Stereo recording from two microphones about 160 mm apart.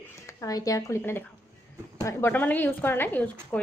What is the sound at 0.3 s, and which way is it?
A woman's voice, 20° left (ahead or behind).